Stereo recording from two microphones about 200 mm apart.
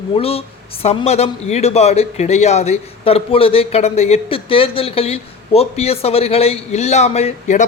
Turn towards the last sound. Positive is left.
turn(degrees=40)  # may be behind; listen again after turning